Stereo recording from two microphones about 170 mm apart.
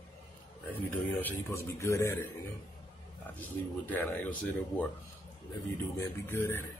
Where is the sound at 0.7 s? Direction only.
10° left (ahead or behind).